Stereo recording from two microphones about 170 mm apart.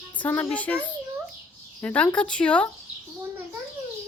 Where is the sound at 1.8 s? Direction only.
10° left (ahead or behind).